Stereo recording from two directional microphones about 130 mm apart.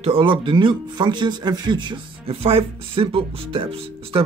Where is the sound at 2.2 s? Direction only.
50° right (ahead or behind).